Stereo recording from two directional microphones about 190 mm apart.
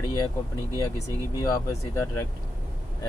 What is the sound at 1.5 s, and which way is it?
Speech, 15° left (ahead or behind).